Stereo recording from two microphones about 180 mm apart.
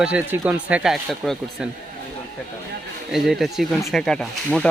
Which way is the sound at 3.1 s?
Centre (ahead or behind).